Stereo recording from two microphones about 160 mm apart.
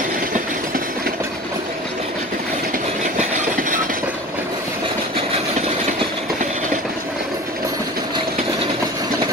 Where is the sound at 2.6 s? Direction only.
60° right (ahead or behind).